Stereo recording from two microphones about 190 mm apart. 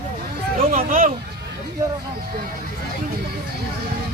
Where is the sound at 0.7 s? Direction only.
45° right (ahead or behind).